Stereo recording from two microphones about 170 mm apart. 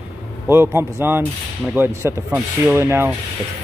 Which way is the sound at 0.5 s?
15° right (ahead or behind).